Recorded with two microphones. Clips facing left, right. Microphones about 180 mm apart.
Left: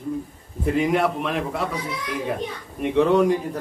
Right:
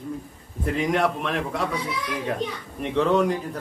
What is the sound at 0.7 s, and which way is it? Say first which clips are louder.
A man's voice: left 2 dB; 5° left (ahead or behind).